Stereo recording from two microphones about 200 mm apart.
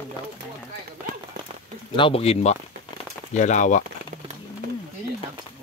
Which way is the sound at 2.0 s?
25° left (ahead or behind).